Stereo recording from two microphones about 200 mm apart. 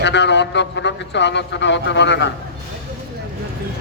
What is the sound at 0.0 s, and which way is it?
A man's voice, 60° left (ahead or behind).